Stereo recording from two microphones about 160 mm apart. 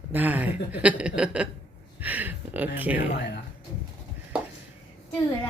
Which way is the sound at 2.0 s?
10° right (ahead or behind).